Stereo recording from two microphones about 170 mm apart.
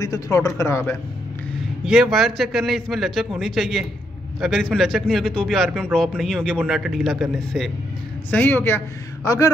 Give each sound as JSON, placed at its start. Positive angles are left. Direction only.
{"t": 0.0, "sound": "speech", "side_deg": 20}
{"t": 1.9, "sound": "a man's voice", "side_deg": 0}
{"t": 8.3, "sound": "a man's voice", "side_deg": 10}